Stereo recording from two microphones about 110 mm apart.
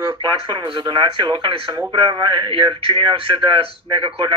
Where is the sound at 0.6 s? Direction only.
45° right (ahead or behind).